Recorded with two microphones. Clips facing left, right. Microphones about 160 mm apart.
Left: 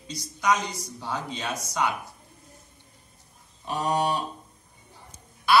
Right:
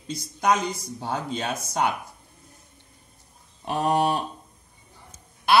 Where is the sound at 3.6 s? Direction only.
55° right (ahead or behind).